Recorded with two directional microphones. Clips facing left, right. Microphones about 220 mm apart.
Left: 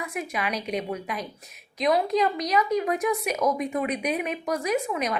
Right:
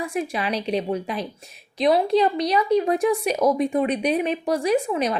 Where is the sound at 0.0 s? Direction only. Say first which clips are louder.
Right 5 dB; 30° right (ahead or behind).